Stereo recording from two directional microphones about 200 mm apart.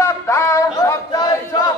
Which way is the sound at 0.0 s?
15° left (ahead or behind).